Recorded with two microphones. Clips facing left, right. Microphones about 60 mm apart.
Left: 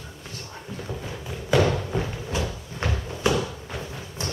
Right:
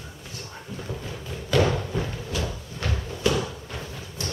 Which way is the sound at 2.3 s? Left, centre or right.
Left.